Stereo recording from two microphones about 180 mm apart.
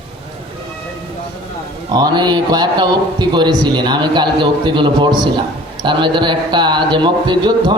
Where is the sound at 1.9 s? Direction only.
25° right (ahead or behind).